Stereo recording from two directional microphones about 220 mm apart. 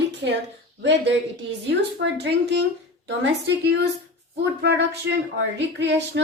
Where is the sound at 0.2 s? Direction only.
55° right (ahead or behind).